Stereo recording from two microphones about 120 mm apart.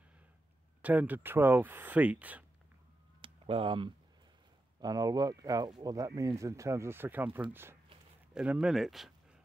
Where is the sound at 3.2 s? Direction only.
45° right (ahead or behind).